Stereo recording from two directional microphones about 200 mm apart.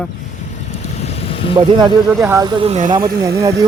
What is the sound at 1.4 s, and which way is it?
Speech, 30° left (ahead or behind).